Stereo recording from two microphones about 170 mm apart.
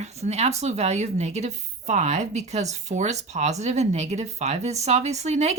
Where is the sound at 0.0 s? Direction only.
40° right (ahead or behind).